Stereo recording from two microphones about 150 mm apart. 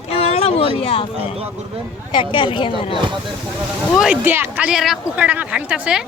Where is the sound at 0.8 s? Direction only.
40° left (ahead or behind).